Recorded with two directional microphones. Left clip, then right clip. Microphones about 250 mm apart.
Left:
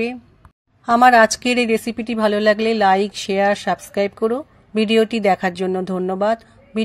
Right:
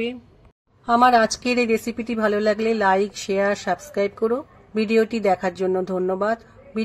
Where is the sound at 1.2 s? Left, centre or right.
Left.